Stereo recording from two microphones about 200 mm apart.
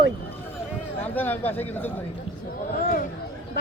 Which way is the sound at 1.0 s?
10° left (ahead or behind).